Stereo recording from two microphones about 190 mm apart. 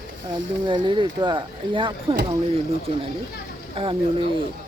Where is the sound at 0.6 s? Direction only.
25° right (ahead or behind).